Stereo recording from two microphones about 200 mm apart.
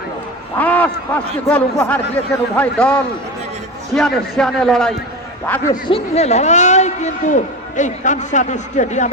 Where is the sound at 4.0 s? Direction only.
Centre (ahead or behind).